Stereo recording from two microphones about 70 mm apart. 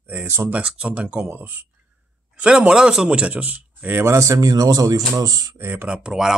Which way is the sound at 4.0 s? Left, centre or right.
Right.